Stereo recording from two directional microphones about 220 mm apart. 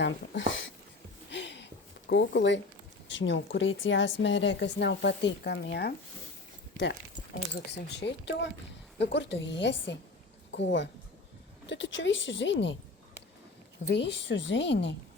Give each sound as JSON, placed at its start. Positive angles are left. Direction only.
{"t": 0.0, "sound": "a woman's voice", "side_deg": 60}
{"t": 1.3, "sound": "a sound", "side_deg": 55}
{"t": 3.1, "sound": "a woman's voice", "side_deg": 55}
{"t": 7.5, "sound": "a woman's voice", "side_deg": 50}
{"t": 13.8, "sound": "a woman's voice", "side_deg": 50}